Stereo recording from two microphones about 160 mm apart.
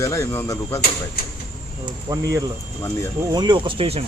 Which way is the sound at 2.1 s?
20° right (ahead or behind).